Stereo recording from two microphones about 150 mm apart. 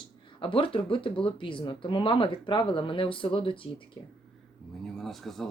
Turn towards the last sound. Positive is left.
turn(degrees=0)  # may be behind; listen again after turning